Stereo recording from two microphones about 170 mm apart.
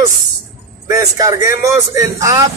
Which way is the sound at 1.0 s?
20° right (ahead or behind).